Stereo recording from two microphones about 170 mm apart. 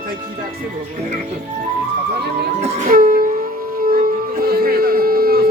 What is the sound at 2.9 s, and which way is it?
Music, 55° right (ahead or behind).